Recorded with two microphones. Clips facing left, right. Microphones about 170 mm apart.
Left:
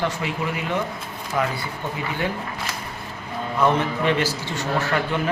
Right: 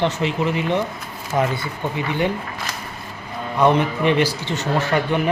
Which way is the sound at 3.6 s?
15° right (ahead or behind).